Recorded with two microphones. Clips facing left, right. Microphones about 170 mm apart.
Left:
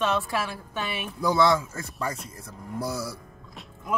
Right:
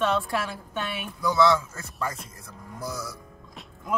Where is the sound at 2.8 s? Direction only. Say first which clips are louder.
Left 3 dB; 30° left (ahead or behind).